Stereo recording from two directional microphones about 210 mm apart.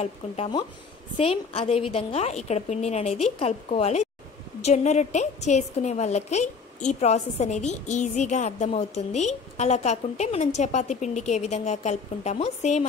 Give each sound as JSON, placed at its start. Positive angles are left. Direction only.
{"t": 0.0, "sound": "a woman's voice", "side_deg": 25}